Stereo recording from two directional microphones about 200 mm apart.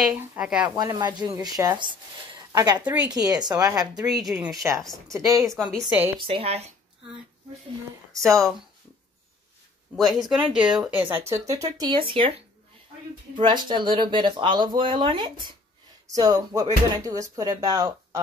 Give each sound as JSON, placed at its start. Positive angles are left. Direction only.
{"t": 0.0, "sound": "speech", "side_deg": -5}
{"t": 0.7, "sound": "speech", "side_deg": -20}
{"t": 2.8, "sound": "speech", "side_deg": -10}
{"t": 3.1, "sound": "speech", "side_deg": -20}
{"t": 5.4, "sound": "speech", "side_deg": 0}
{"t": 6.1, "sound": "speech", "side_deg": -25}
{"t": 8.2, "sound": "speech", "side_deg": 0}
{"t": 9.9, "sound": "speech", "side_deg": 0}
{"t": 13.4, "sound": "speech", "side_deg": -25}